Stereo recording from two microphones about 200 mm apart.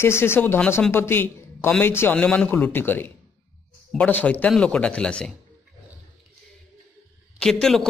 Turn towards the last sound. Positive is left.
turn(degrees=0)  # may be behind; listen again after turning